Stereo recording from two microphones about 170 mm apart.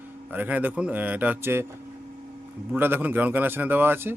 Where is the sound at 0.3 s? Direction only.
10° right (ahead or behind).